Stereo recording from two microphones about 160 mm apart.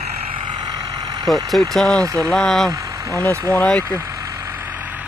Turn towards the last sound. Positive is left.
turn(degrees=-10)  # may be behind; listen again after turning